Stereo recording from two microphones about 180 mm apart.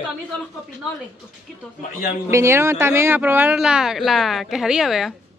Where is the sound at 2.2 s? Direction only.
15° right (ahead or behind).